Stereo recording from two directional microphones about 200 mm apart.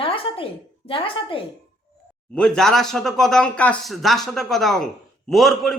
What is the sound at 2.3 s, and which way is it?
Speech, 5° left (ahead or behind).